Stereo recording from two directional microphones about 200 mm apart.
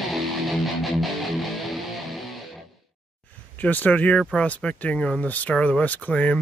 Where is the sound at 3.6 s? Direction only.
10° left (ahead or behind).